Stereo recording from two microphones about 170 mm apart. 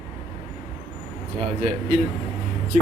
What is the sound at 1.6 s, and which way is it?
Speech, 45° right (ahead or behind).